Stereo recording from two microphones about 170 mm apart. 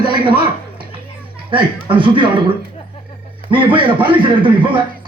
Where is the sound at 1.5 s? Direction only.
30° right (ahead or behind).